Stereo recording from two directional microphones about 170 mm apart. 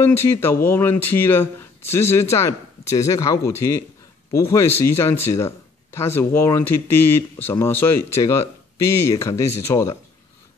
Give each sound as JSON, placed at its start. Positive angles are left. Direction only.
{"t": 0.0, "sound": "speech", "side_deg": 15}